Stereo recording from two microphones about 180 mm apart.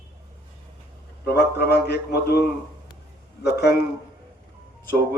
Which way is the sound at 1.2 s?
65° left (ahead or behind).